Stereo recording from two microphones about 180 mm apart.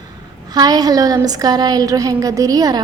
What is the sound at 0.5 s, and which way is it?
A woman's voice, 20° right (ahead or behind).